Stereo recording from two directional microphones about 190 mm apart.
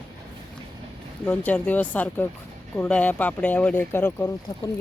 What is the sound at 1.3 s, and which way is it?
Speech, 10° left (ahead or behind).